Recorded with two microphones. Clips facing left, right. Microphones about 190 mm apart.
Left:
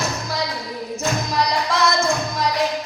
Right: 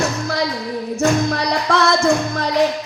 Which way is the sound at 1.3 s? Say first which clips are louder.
Right 3 dB; 70° right (ahead or behind).